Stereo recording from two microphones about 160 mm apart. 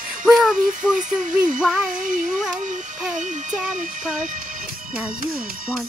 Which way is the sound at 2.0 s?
55° right (ahead or behind).